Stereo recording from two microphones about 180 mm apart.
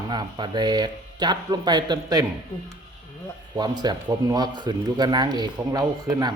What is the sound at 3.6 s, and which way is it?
Speech, 20° right (ahead or behind).